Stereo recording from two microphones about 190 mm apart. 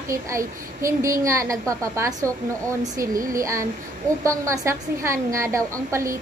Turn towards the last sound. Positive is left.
turn(degrees=-15)  # may be behind; listen again after turning